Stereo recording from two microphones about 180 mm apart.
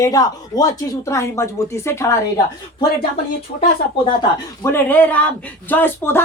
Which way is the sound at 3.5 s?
55° left (ahead or behind).